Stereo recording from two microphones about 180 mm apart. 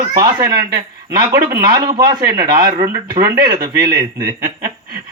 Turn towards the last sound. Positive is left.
turn(degrees=-20)  # may be behind; listen again after turning